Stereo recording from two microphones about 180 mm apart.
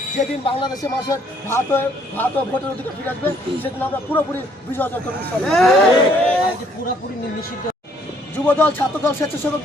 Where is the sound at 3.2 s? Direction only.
10° left (ahead or behind).